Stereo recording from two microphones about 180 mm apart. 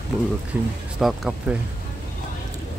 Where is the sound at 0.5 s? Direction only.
10° right (ahead or behind).